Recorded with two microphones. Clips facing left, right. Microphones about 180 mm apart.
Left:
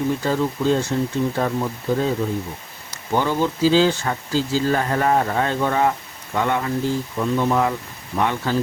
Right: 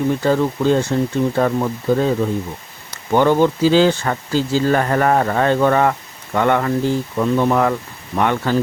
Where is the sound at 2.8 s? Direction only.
65° right (ahead or behind).